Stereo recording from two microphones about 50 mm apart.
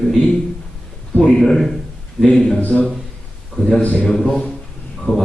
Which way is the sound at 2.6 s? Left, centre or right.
Left.